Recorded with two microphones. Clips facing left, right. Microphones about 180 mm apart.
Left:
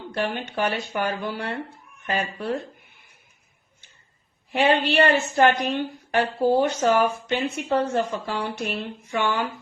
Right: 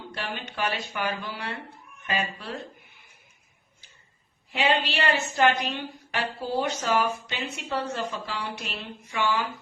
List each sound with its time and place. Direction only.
0.1 s a woman's voice: 50° left (ahead or behind)
4.8 s a woman's voice: 55° left (ahead or behind)